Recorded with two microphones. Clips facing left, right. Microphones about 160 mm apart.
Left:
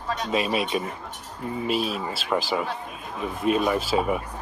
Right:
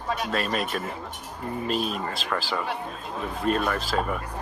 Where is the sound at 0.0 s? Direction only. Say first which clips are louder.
Even; 5° right (ahead or behind).